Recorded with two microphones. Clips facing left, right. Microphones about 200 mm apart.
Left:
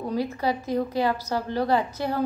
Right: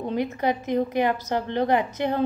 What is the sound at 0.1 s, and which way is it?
A woman's voice, 20° right (ahead or behind).